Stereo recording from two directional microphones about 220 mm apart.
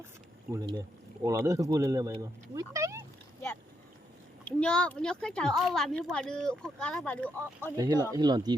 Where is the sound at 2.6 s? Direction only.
15° right (ahead or behind).